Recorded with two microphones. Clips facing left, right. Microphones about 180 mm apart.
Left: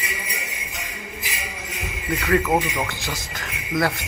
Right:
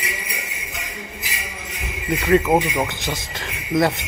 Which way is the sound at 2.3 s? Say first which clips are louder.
Right 4 dB; 20° right (ahead or behind).